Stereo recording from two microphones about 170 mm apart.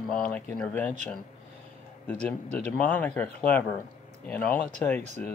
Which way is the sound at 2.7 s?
10° left (ahead or behind).